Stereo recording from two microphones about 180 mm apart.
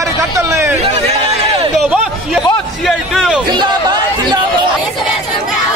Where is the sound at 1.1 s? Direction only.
35° right (ahead or behind).